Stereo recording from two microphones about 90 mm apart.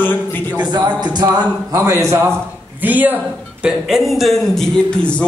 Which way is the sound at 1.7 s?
35° right (ahead or behind).